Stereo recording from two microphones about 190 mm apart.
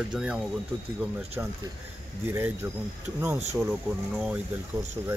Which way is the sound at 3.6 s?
5° right (ahead or behind).